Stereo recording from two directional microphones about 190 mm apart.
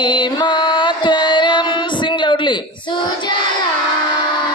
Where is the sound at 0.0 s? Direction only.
25° left (ahead or behind).